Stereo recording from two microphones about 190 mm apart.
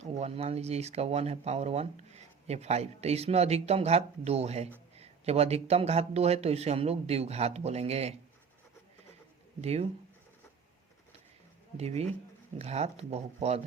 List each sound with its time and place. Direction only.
0.0 s speech: 35° right (ahead or behind)
9.6 s speech: 35° right (ahead or behind)
11.8 s speech: 35° right (ahead or behind)